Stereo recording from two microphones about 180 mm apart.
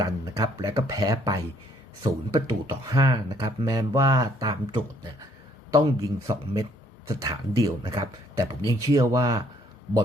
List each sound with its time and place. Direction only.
0.0 s speech: 20° right (ahead or behind)